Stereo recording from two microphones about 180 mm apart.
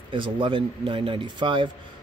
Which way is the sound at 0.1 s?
25° right (ahead or behind).